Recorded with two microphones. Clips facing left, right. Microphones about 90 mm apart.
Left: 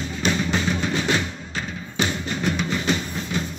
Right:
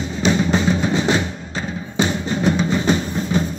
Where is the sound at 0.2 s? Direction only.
25° right (ahead or behind).